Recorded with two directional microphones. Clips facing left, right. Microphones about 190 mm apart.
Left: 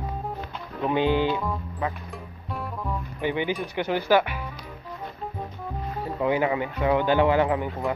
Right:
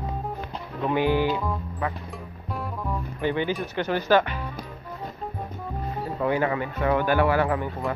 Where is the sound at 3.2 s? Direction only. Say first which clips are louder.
Right 1 dB; 15° left (ahead or behind).